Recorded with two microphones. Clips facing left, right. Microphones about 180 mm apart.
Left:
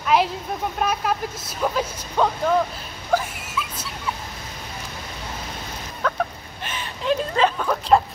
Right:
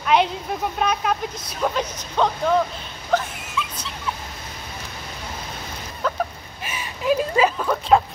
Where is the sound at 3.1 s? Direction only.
10° left (ahead or behind).